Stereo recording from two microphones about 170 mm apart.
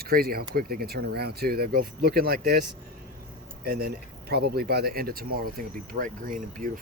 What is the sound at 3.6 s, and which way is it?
Speech, 65° right (ahead or behind).